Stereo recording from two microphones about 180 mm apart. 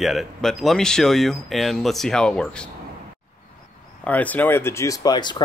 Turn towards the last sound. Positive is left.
turn(degrees=25)  # may be behind; listen again after turning